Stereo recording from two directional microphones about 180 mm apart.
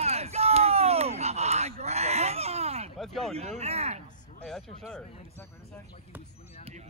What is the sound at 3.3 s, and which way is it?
Speech, 35° right (ahead or behind).